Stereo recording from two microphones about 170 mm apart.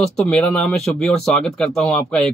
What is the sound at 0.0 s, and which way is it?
Speech, 5° left (ahead or behind).